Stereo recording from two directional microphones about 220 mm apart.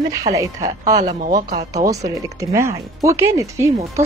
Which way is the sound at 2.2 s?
15° right (ahead or behind).